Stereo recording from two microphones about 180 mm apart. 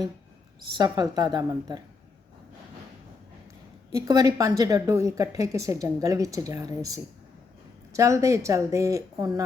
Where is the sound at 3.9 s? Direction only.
20° right (ahead or behind).